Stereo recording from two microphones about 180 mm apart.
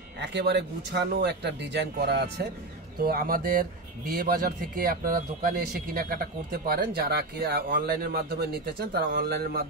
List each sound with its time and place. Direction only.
0.2 s speech: 70° right (ahead or behind)
3.0 s a man's voice: 55° right (ahead or behind)